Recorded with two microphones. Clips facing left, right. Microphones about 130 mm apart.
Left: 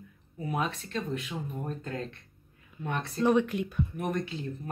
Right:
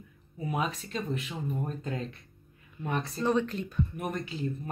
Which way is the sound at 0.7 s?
5° right (ahead or behind).